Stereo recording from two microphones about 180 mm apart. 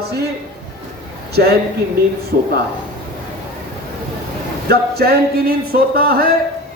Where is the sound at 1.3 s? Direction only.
60° right (ahead or behind).